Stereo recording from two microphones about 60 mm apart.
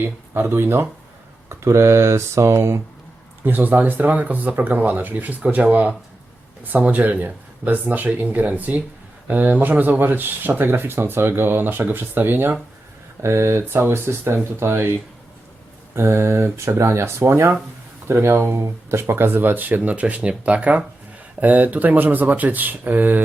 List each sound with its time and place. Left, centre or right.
0.3 s speech: right
1.5 s speech: right
3.4 s speech: right
13.2 s speech: right
13.7 s speech: right
16.0 s speech: right